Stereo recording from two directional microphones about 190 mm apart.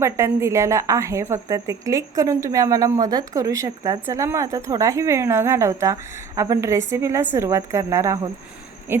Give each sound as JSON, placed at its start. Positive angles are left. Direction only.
{"t": 0.0, "sound": "a woman's voice", "side_deg": -15}